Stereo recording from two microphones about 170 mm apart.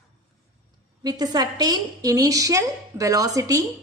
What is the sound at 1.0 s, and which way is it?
A woman's voice, 25° right (ahead or behind).